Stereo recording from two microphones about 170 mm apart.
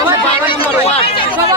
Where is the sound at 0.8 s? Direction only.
35° left (ahead or behind).